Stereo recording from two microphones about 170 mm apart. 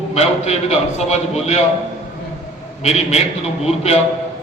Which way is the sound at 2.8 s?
40° left (ahead or behind).